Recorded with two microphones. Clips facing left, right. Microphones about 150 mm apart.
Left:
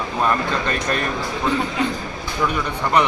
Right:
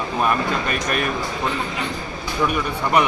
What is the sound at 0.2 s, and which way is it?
Speech, 15° right (ahead or behind).